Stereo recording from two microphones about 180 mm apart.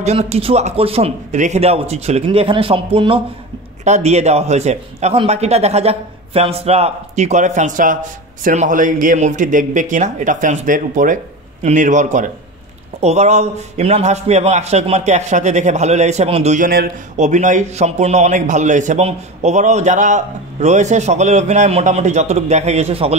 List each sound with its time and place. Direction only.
0.0 s a man's voice: 35° right (ahead or behind)